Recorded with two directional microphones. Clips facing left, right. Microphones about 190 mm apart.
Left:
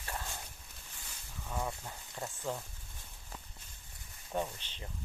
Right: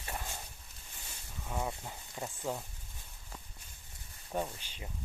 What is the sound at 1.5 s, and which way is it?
Speech, 15° right (ahead or behind).